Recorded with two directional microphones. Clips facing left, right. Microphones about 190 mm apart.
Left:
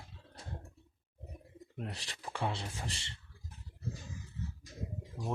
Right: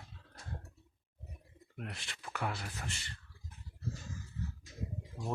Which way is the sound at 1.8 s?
35° left (ahead or behind).